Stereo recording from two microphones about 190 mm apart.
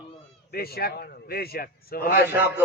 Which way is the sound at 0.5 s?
55° left (ahead or behind).